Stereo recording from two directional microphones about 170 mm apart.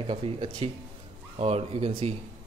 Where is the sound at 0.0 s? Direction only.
35° right (ahead or behind).